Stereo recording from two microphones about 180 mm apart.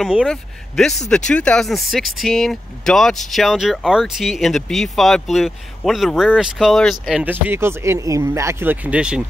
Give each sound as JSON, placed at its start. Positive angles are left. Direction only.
{"t": 0.0, "sound": "speech", "side_deg": 0}